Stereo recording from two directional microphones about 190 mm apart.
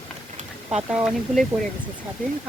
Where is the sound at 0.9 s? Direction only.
5° right (ahead or behind).